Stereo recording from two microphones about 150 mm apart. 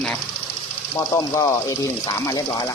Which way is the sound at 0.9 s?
20° left (ahead or behind).